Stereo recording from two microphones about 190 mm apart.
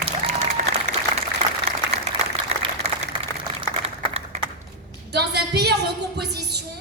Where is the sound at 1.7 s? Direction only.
35° right (ahead or behind).